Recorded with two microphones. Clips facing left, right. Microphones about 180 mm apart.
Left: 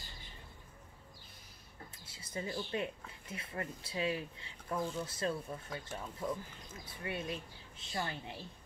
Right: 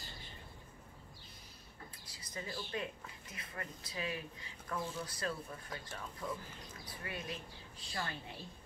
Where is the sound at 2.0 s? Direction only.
25° left (ahead or behind).